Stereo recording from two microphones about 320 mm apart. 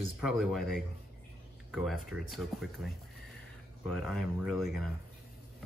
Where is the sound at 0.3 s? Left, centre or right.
Centre.